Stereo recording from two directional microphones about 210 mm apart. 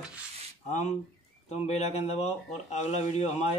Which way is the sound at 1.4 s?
30° left (ahead or behind).